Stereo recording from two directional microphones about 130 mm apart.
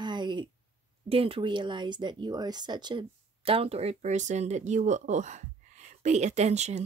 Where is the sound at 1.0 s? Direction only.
45° right (ahead or behind).